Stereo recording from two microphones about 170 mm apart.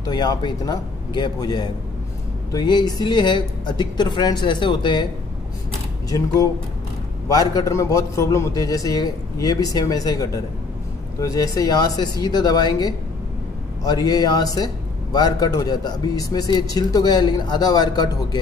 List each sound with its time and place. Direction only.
0.0 s speech: 25° left (ahead or behind)
7.2 s speech: 20° left (ahead or behind)